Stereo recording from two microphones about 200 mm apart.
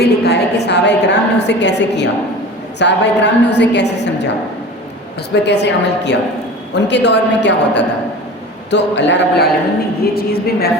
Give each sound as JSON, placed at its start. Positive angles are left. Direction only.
{"t": 0.0, "sound": "a woman's voice", "side_deg": 55}
{"t": 5.3, "sound": "a woman's voice", "side_deg": 60}